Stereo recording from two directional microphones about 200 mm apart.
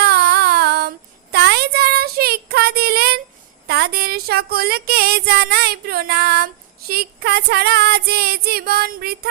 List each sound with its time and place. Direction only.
0.0 s female singing: 55° right (ahead or behind)
1.3 s child singing: 55° right (ahead or behind)
3.7 s female singing: 50° right (ahead or behind)